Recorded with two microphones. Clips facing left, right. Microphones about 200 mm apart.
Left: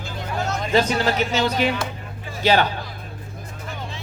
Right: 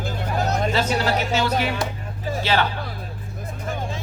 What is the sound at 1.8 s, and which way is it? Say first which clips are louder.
Music: right 2 dB; 40° right (ahead or behind).